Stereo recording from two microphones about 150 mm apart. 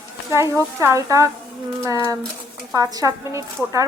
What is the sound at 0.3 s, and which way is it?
Speech, 20° right (ahead or behind).